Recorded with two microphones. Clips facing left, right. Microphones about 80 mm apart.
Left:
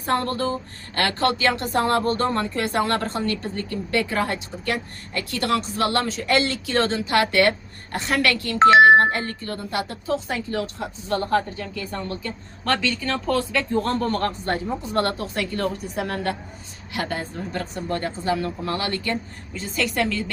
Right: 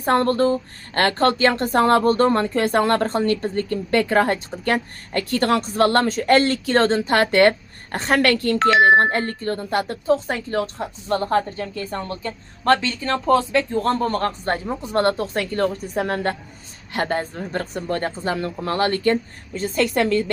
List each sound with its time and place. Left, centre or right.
0.0 s speech: right